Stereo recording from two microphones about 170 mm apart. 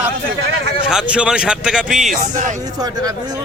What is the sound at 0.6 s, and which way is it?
Speech, 40° left (ahead or behind).